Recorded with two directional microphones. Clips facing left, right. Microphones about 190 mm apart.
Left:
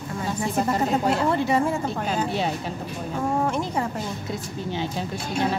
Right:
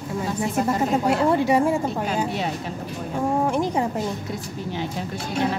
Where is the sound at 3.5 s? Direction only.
15° right (ahead or behind).